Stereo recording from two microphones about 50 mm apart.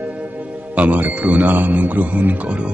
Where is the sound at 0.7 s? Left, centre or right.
Right.